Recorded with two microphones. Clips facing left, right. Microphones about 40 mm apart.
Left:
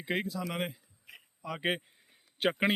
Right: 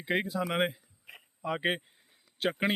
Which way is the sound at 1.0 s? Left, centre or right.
Right.